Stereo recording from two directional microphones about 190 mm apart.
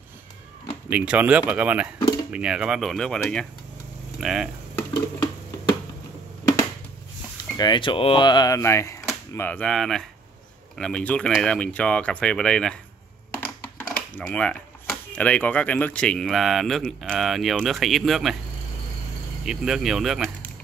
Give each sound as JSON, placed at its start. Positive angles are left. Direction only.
{"t": 0.8, "sound": "speech", "side_deg": -5}
{"t": 7.5, "sound": "speech", "side_deg": 20}
{"t": 19.4, "sound": "speech", "side_deg": -5}